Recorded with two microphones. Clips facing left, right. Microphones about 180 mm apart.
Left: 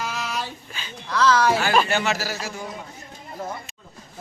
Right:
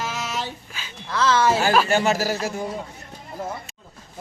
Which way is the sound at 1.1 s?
25° right (ahead or behind).